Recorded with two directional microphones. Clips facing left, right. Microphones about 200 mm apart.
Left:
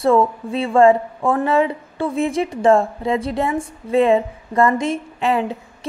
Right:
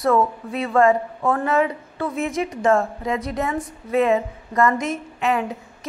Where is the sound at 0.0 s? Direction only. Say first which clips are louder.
Left 3 dB; 30° left (ahead or behind).